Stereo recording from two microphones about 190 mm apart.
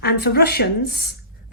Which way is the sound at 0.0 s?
55° left (ahead or behind).